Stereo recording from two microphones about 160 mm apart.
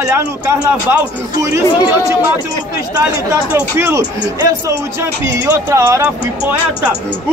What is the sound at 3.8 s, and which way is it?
A man's voice, 20° right (ahead or behind).